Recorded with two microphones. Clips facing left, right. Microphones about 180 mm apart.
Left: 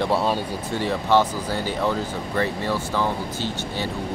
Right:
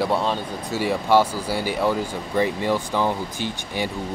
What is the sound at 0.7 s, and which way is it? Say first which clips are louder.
Speech: right 1 dB; 10° right (ahead or behind).